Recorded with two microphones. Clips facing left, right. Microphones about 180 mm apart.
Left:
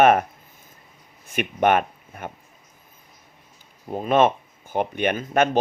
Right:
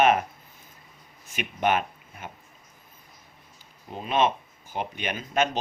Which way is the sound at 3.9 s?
50° left (ahead or behind).